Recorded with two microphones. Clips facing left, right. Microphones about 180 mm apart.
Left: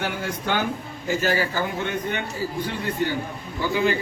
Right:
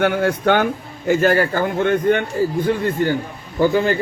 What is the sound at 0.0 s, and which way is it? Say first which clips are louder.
A man's voice: right 11 dB; 60° right (ahead or behind).